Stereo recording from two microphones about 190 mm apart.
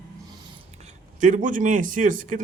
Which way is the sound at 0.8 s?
40° right (ahead or behind).